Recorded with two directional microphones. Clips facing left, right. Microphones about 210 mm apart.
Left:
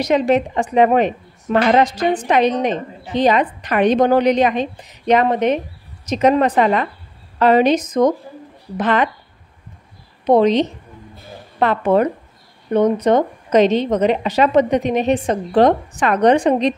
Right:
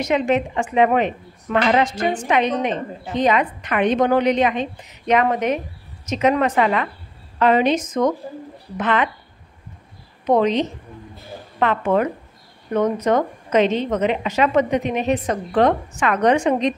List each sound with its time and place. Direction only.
0.0 s a woman's voice: 35° left (ahead or behind)
10.2 s a woman's voice: 35° left (ahead or behind)